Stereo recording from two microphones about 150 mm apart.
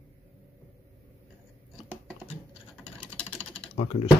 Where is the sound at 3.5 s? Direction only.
40° left (ahead or behind).